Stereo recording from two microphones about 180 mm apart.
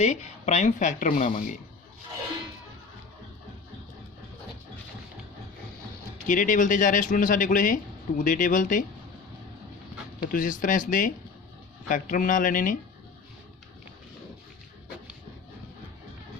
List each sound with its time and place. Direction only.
0.0 s speech: 40° left (ahead or behind)
6.2 s speech: 45° left (ahead or behind)
10.2 s speech: 50° left (ahead or behind)